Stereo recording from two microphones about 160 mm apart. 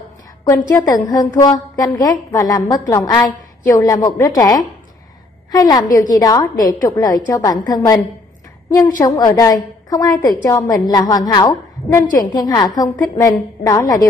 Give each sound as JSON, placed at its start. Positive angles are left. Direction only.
{"t": 0.5, "sound": "a woman's voice", "side_deg": 20}